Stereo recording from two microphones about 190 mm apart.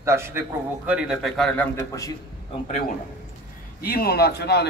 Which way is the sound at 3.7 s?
50° left (ahead or behind).